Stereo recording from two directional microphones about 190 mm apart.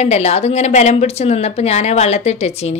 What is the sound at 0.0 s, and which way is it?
Speech, 35° left (ahead or behind).